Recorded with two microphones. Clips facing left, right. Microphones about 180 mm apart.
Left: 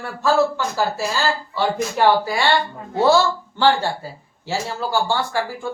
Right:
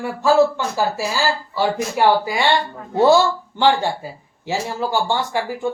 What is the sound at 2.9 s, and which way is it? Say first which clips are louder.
Speech: right 2 dB; 15° right (ahead or behind).